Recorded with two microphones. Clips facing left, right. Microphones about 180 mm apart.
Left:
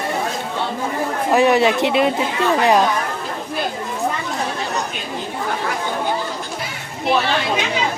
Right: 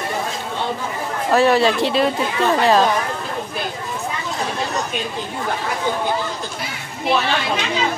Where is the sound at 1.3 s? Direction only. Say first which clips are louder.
Even; 20° left (ahead or behind).